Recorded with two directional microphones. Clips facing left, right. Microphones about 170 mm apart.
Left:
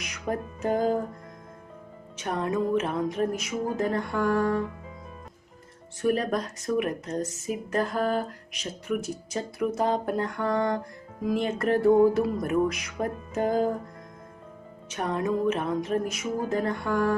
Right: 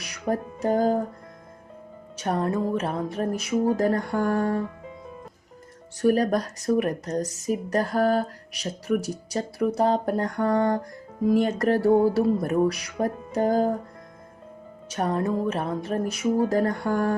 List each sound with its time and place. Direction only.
0.0 s music: 35° right (ahead or behind)
2.1 s speech: 40° right (ahead or behind)
6.0 s speech: 40° right (ahead or behind)
14.9 s speech: 40° right (ahead or behind)